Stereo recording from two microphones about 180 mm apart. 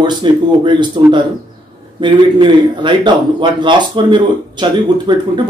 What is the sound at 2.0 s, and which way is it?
A man's voice, 25° right (ahead or behind).